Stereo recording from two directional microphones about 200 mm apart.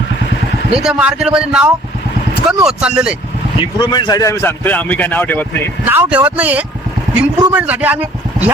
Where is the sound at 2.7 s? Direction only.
5° right (ahead or behind).